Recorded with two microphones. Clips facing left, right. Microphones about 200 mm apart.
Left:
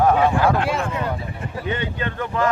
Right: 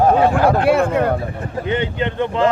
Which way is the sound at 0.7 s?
60° right (ahead or behind).